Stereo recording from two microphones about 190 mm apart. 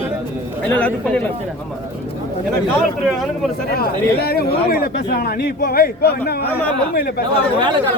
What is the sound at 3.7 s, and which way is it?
Speech, 55° left (ahead or behind).